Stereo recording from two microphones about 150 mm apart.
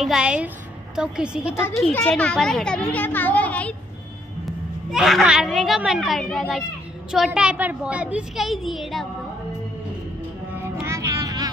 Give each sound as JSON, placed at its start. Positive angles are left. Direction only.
{"t": 0.0, "sound": "a woman's voice", "side_deg": -5}
{"t": 1.9, "sound": "a woman's voice", "side_deg": 10}
{"t": 10.6, "sound": "music", "side_deg": -15}